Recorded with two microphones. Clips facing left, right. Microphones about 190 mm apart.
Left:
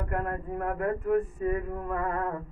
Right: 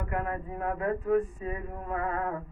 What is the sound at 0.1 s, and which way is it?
Speech, 50° left (ahead or behind).